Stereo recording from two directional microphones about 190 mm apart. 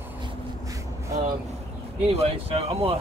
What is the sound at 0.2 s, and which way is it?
Vehicle, 15° right (ahead or behind).